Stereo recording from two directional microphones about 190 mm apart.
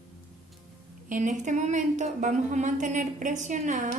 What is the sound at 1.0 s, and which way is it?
A woman's voice, 40° right (ahead or behind).